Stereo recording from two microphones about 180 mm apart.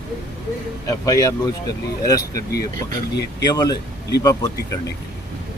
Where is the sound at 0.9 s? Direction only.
20° left (ahead or behind).